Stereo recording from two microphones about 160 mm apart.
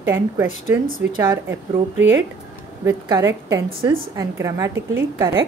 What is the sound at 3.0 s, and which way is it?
A woman's voice, 20° right (ahead or behind).